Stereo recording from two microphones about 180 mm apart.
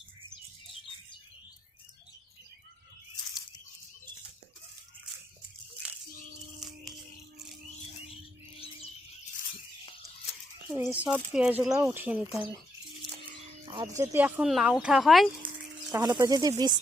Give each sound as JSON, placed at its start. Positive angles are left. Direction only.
{"t": 6.6, "sound": "music", "side_deg": 0}
{"t": 10.7, "sound": "speech", "side_deg": -15}
{"t": 13.7, "sound": "speech", "side_deg": -20}
{"t": 15.9, "sound": "speech", "side_deg": -20}